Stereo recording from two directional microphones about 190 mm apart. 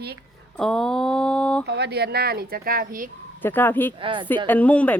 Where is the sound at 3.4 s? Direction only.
10° left (ahead or behind).